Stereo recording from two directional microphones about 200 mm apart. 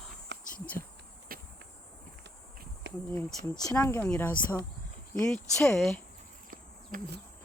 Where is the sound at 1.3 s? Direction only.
45° right (ahead or behind).